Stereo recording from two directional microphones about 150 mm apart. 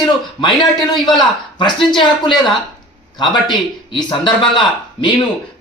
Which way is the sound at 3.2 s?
30° left (ahead or behind).